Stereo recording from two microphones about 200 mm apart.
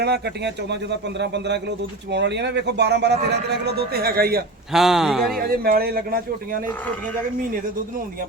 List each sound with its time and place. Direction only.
0.0 s speech: 55° right (ahead or behind)
4.7 s speech: centre (ahead or behind)
5.5 s speech: 50° right (ahead or behind)